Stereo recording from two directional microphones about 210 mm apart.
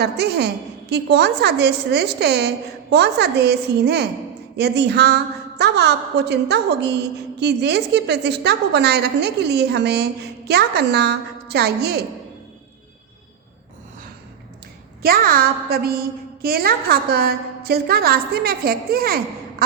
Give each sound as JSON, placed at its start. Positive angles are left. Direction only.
{"t": 0.0, "sound": "a woman's voice", "side_deg": -50}
{"t": 15.0, "sound": "a woman's voice", "side_deg": -45}